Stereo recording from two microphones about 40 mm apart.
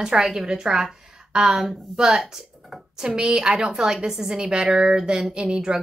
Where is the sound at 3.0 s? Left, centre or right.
Right.